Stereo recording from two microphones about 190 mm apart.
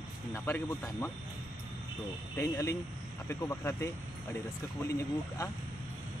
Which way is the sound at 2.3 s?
15° left (ahead or behind).